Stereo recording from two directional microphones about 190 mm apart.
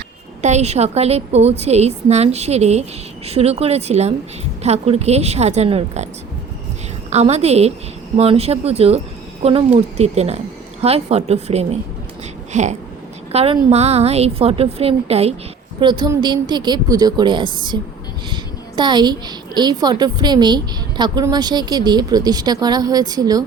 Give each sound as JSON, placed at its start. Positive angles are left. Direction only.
{"t": 0.4, "sound": "a woman's voice", "side_deg": -35}
{"t": 7.1, "sound": "a woman's voice", "side_deg": -35}
{"t": 18.8, "sound": "a woman's voice", "side_deg": -25}